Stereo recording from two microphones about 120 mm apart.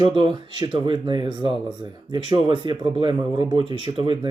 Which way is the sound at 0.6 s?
45° right (ahead or behind).